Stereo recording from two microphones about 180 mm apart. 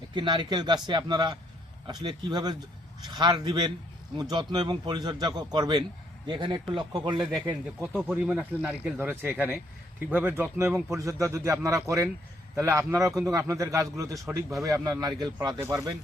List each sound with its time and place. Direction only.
0.1 s speech: 25° right (ahead or behind)
7.9 s speech: 5° right (ahead or behind)